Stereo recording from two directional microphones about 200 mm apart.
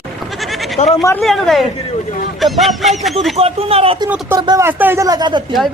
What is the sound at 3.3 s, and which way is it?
Speech, 30° right (ahead or behind).